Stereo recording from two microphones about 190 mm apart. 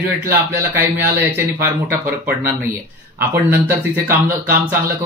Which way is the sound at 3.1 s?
10° right (ahead or behind).